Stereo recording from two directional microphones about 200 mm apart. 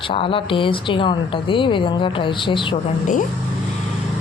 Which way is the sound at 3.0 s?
40° left (ahead or behind).